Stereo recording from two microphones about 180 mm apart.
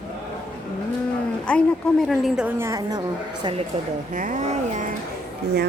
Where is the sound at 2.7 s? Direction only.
20° right (ahead or behind).